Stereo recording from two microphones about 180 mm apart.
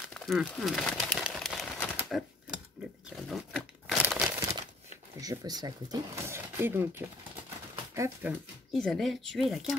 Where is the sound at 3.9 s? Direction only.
10° right (ahead or behind).